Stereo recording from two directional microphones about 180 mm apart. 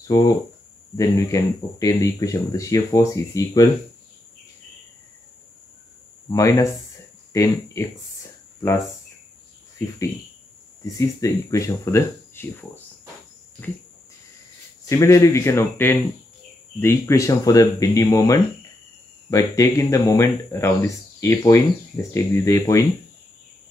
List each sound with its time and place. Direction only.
0.1 s speech: 20° left (ahead or behind)
6.3 s speech: 15° left (ahead or behind)
10.8 s speech: 15° left (ahead or behind)
14.9 s speech: 15° left (ahead or behind)